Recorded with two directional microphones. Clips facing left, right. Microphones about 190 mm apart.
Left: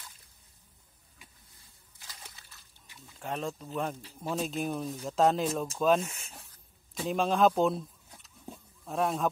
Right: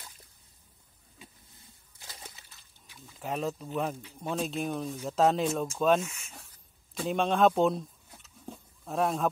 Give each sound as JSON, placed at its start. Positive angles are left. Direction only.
{"t": 3.2, "sound": "speech", "side_deg": -5}
{"t": 6.0, "sound": "speech", "side_deg": 35}
{"t": 6.9, "sound": "speech", "side_deg": 0}
{"t": 8.5, "sound": "wild animals", "side_deg": 0}